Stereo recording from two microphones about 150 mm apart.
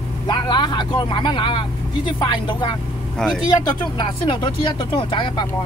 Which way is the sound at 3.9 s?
30° left (ahead or behind).